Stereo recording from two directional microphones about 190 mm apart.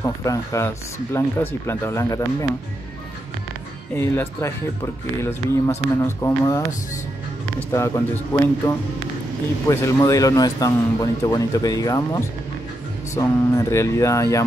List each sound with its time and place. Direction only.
0.0 s speech: 15° left (ahead or behind)
3.9 s speech: 10° left (ahead or behind)
7.7 s speech: 15° left (ahead or behind)